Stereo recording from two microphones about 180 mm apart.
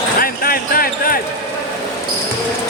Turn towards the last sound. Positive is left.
turn(degrees=55)  # may be behind; listen again after turning